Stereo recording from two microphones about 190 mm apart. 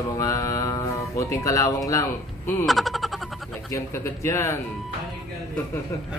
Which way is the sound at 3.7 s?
15° left (ahead or behind).